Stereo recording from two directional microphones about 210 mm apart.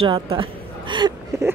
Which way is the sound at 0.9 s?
20° right (ahead or behind).